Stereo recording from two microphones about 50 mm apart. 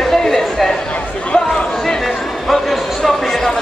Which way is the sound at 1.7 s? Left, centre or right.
Centre.